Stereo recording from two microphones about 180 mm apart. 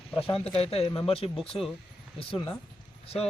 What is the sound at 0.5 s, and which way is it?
Speech, 35° left (ahead or behind).